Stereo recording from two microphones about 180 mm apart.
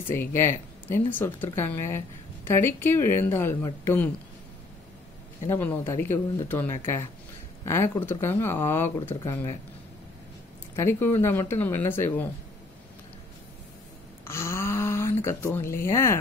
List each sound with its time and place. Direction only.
0.1 s speech: 15° left (ahead or behind)
5.5 s speech: 10° left (ahead or behind)
10.8 s speech: 15° left (ahead or behind)
14.2 s a sound: 15° left (ahead or behind)